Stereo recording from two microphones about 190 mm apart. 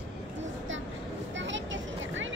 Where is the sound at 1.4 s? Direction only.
75° right (ahead or behind).